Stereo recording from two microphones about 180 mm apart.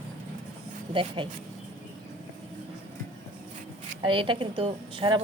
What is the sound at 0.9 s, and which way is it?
Speech, 30° right (ahead or behind).